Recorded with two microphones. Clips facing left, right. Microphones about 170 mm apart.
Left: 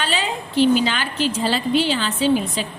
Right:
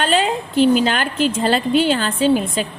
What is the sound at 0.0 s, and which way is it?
A woman's voice, 50° right (ahead or behind).